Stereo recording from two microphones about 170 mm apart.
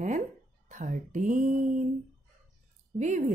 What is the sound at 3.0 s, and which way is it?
Speech, 45° right (ahead or behind).